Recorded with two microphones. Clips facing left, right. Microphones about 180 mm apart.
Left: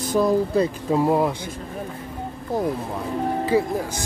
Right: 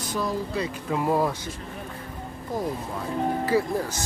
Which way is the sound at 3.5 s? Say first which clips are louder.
Left 3 dB; 20° left (ahead or behind).